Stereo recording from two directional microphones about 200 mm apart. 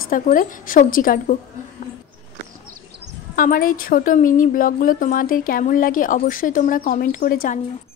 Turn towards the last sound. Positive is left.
turn(degrees=45)  # may be behind; listen again after turning